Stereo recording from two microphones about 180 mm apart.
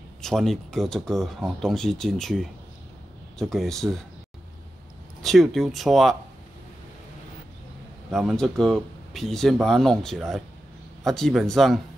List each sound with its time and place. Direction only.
0.2 s speech: centre (ahead or behind)
5.2 s speech: centre (ahead or behind)
8.1 s speech: centre (ahead or behind)